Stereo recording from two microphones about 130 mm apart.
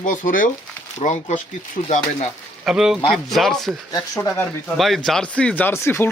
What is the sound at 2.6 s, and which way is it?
Speech, 5° right (ahead or behind).